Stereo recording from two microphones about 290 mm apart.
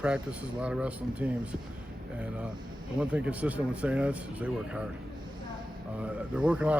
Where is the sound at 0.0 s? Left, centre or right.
Centre.